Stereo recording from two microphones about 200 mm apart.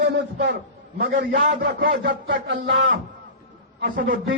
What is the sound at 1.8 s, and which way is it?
A man's voice, 65° right (ahead or behind).